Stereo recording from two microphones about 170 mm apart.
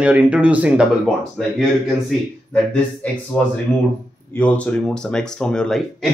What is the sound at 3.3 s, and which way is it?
Speech, 10° left (ahead or behind).